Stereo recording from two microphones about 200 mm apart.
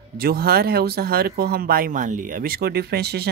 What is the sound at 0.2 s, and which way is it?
Speech, 50° right (ahead or behind).